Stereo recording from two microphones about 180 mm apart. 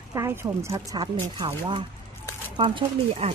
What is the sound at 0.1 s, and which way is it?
Speech, 15° right (ahead or behind).